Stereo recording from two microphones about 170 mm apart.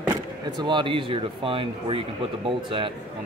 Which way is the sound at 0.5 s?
30° right (ahead or behind).